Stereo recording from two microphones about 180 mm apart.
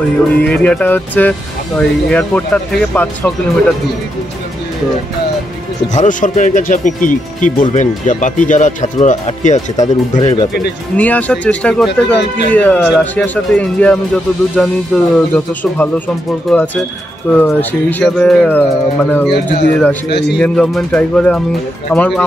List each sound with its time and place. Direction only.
0.4 s speech: 5° left (ahead or behind)
5.9 s speech: 45° left (ahead or behind)
11.0 s speech: 10° left (ahead or behind)
17.3 s speech: 10° left (ahead or behind)
20.1 s a man's voice: 70° left (ahead or behind)
20.3 s speech: 5° left (ahead or behind)